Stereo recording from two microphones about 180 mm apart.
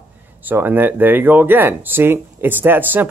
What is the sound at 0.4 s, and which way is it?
Speech, 10° right (ahead or behind).